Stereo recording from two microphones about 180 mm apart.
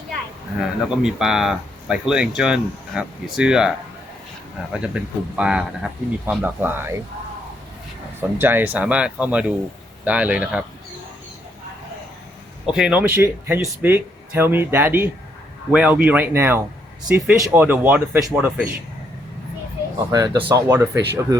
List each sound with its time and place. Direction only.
0.6 s speech: 5° right (ahead or behind)
4.7 s speech: 5° right (ahead or behind)
8.4 s speech: 10° right (ahead or behind)
12.6 s speech: 5° right (ahead or behind)
20.1 s speech: 20° right (ahead or behind)